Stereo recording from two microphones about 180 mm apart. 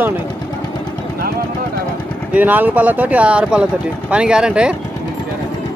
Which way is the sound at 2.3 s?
10° right (ahead or behind).